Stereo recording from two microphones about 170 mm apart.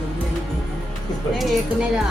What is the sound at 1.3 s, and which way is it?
Speech, centre (ahead or behind).